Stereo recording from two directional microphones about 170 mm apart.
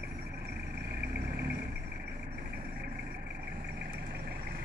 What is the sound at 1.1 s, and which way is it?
Vehicle, 70° right (ahead or behind).